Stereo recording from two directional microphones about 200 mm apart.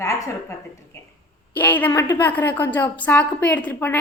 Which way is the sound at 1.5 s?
10° left (ahead or behind).